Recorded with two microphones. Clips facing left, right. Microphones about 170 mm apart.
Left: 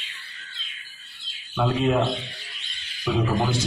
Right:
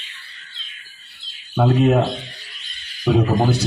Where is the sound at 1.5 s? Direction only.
45° right (ahead or behind).